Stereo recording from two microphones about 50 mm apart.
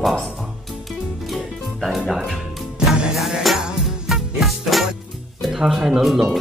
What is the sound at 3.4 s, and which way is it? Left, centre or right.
Music, centre.